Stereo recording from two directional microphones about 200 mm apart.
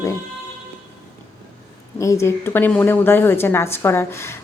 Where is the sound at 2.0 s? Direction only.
15° left (ahead or behind).